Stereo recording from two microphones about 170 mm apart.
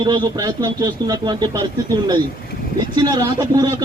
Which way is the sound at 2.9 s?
25° right (ahead or behind).